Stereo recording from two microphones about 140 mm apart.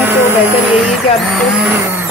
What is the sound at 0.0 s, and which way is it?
Music, 15° right (ahead or behind).